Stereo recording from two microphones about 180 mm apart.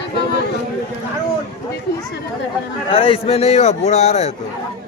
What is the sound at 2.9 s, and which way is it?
A man's voice, 30° left (ahead or behind).